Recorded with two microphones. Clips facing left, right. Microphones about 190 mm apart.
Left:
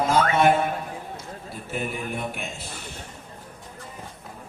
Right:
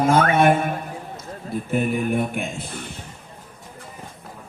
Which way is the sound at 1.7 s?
55° right (ahead or behind).